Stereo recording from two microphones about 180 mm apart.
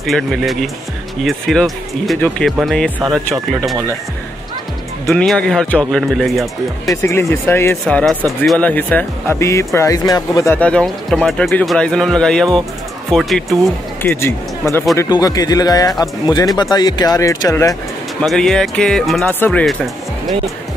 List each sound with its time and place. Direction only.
0.0 s speech: centre (ahead or behind)
5.0 s speech: 5° left (ahead or behind)
6.9 s speech: 15° left (ahead or behind)
7.8 s speech: 5° left (ahead or behind)
14.0 s speech: 15° left (ahead or behind)
18.2 s speech: centre (ahead or behind)